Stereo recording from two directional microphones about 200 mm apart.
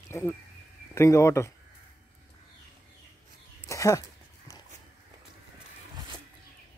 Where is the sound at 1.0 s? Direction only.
15° left (ahead or behind).